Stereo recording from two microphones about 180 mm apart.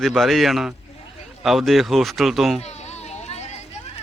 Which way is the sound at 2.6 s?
35° left (ahead or behind).